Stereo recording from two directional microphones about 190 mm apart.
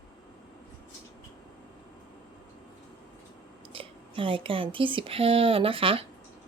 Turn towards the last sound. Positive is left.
turn(degrees=-30)  # may be behind; listen again after turning